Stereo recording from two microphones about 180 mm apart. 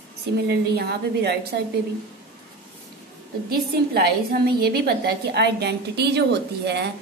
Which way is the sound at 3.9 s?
60° right (ahead or behind).